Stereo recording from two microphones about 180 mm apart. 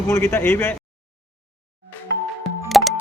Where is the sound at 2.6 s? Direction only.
Centre (ahead or behind).